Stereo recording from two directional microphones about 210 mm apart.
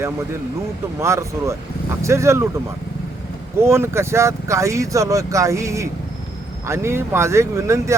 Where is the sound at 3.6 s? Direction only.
10° right (ahead or behind).